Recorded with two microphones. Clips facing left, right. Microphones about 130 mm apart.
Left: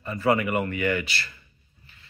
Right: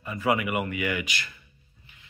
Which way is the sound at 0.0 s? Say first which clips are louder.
Left 3 dB; 10° right (ahead or behind).